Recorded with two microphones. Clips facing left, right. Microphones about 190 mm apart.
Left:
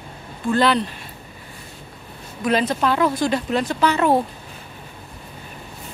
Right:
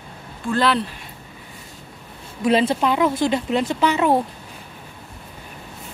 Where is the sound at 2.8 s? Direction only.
15° right (ahead or behind).